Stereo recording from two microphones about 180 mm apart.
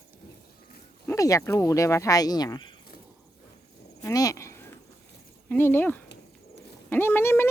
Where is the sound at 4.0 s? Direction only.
20° left (ahead or behind).